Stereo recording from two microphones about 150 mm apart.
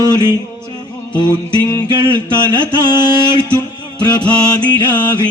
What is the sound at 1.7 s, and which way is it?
Mantra, 30° left (ahead or behind).